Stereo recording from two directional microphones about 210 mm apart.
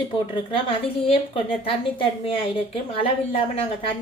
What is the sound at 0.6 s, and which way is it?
A woman's voice, 25° left (ahead or behind).